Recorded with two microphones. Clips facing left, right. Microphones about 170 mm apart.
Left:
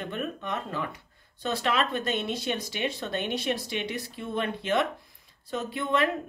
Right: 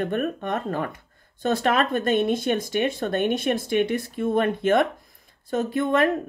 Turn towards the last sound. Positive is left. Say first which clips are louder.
# right 6 dB
turn(degrees=-50)  # may be behind; listen again after turning